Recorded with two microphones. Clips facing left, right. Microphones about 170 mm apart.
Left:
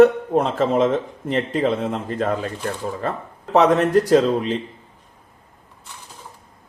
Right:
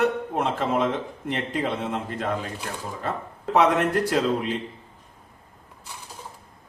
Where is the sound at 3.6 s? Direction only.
40° left (ahead or behind).